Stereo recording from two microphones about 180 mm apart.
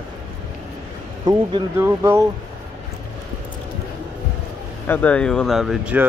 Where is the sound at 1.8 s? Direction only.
15° right (ahead or behind).